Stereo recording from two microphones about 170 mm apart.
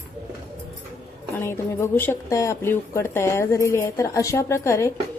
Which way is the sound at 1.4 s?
15° left (ahead or behind).